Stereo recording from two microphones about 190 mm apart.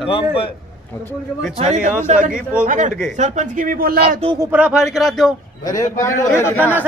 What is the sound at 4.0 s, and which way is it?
Speech, 30° right (ahead or behind).